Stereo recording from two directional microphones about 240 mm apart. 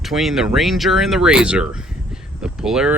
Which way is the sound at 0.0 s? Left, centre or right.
Centre.